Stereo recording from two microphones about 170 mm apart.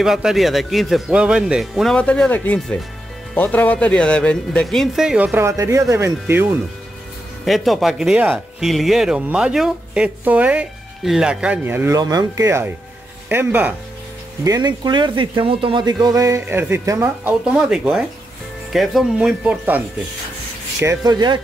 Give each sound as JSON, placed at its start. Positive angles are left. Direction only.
{"t": 0.0, "sound": "speech", "side_deg": 0}
{"t": 7.4, "sound": "speech", "side_deg": 0}
{"t": 14.4, "sound": "speech", "side_deg": -20}
{"t": 20.8, "sound": "speech", "side_deg": -20}